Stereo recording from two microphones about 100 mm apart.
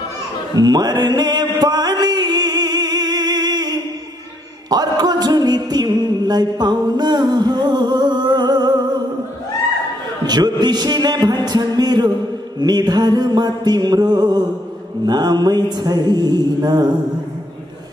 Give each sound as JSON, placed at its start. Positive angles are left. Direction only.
{"t": 0.6, "sound": "music", "side_deg": -40}
{"t": 10.2, "sound": "mantra", "side_deg": -45}